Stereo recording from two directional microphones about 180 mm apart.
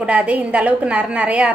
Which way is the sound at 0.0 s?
5° right (ahead or behind).